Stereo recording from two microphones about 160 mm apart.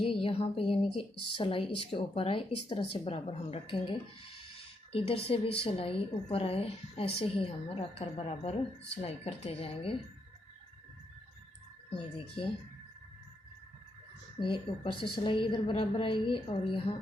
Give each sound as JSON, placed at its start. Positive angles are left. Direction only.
{"t": 0.0, "sound": "a woman's voice", "side_deg": 35}
{"t": 11.9, "sound": "a woman's voice", "side_deg": 35}
{"t": 14.3, "sound": "a woman's voice", "side_deg": 30}